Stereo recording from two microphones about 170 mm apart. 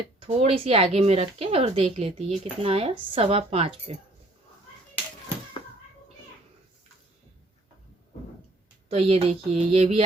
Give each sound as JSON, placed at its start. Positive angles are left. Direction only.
{"t": 0.4, "sound": "speech", "side_deg": -35}
{"t": 8.9, "sound": "speech", "side_deg": -40}